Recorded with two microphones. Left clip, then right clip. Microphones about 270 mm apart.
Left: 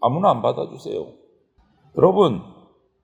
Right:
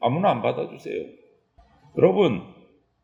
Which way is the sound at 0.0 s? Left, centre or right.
Centre.